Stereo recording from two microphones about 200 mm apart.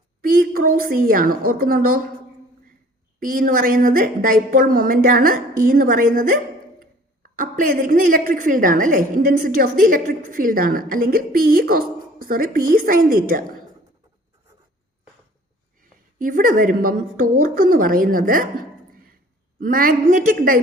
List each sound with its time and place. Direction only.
0.2 s a woman's voice: 45° right (ahead or behind)
3.2 s a woman's voice: 45° right (ahead or behind)
15.8 s a woman's voice: 40° right (ahead or behind)